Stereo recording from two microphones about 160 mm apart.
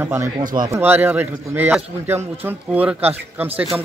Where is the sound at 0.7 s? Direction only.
10° right (ahead or behind).